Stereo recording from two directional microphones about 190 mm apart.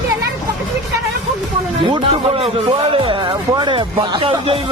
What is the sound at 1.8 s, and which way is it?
Speech, 30° right (ahead or behind).